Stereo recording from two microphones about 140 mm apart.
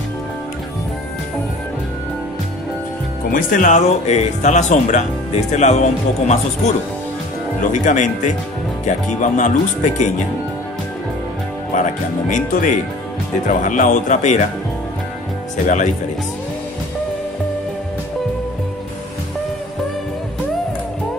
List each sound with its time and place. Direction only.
3.3 s speech: 70° left (ahead or behind)
11.7 s speech: 65° left (ahead or behind)
15.6 s speech: 65° left (ahead or behind)